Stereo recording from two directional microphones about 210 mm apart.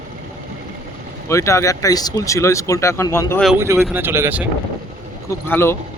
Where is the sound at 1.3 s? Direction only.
15° left (ahead or behind).